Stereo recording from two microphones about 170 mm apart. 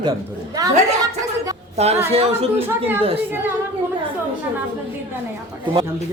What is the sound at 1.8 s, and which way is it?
A woman's voice, 40° right (ahead or behind).